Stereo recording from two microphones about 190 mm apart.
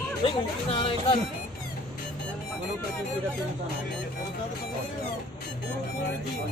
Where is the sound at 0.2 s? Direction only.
25° left (ahead or behind).